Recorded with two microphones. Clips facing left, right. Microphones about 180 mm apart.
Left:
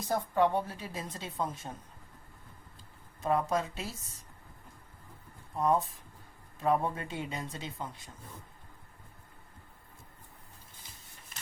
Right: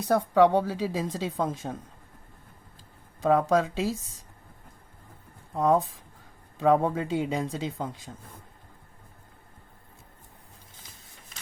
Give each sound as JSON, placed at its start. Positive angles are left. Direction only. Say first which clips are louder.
{"t": 0.0, "sound": "a woman's voice", "louder": "right 8 dB", "side_deg": -75}
{"t": 3.2, "sound": "a woman's voice", "louder": "right 7 dB", "side_deg": -90}
{"t": 5.5, "sound": "a woman's voice", "louder": "right 5 dB", "side_deg": -90}